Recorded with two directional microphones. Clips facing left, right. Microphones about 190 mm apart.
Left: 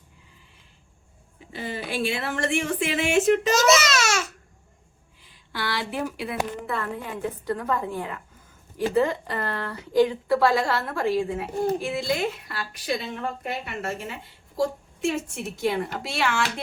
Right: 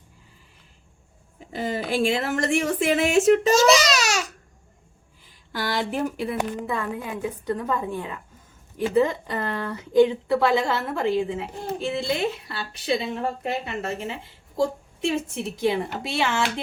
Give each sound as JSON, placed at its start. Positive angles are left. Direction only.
{"t": 1.5, "sound": "speech", "side_deg": -40}
{"t": 3.5, "sound": "a woman's voice", "side_deg": -30}
{"t": 3.8, "sound": "babbling", "side_deg": -15}
{"t": 5.5, "sound": "a woman's voice", "side_deg": -45}
{"t": 6.7, "sound": "a woman's voice", "side_deg": -15}